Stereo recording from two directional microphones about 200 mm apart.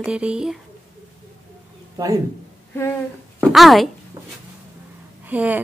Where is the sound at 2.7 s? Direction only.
10° left (ahead or behind).